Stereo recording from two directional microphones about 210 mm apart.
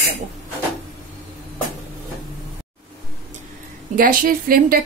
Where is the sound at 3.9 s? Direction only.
40° right (ahead or behind).